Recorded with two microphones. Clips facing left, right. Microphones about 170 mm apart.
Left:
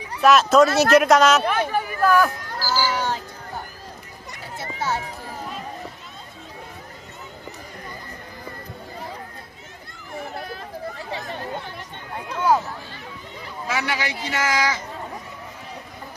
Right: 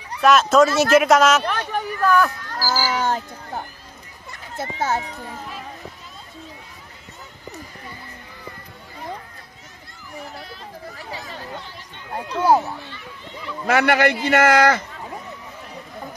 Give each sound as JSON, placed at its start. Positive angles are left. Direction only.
{"t": 0.2, "sound": "speech", "side_deg": 0}
{"t": 2.6, "sound": "cat", "side_deg": -45}
{"t": 4.6, "sound": "a child's voice", "side_deg": -50}
{"t": 10.3, "sound": "a sound", "side_deg": 55}
{"t": 11.1, "sound": "speech", "side_deg": 55}
{"t": 12.4, "sound": "speech", "side_deg": -30}
{"t": 13.7, "sound": "a man's voice", "side_deg": -60}